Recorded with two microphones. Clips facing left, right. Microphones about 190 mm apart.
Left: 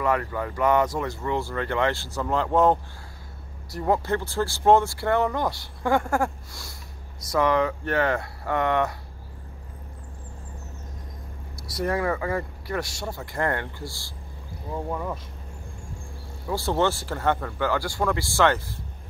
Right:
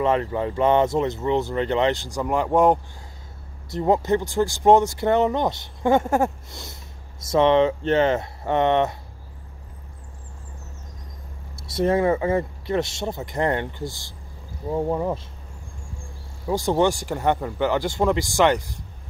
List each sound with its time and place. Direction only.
0.0 s speech: 25° right (ahead or behind)
11.5 s speech: 25° right (ahead or behind)
16.4 s speech: 15° right (ahead or behind)